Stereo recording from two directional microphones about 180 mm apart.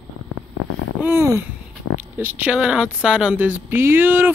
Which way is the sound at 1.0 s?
15° right (ahead or behind).